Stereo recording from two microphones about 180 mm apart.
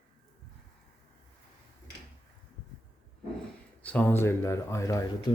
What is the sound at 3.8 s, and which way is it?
Speech, 10° left (ahead or behind).